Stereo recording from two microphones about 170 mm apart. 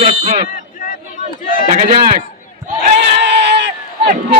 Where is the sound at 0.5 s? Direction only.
50° left (ahead or behind).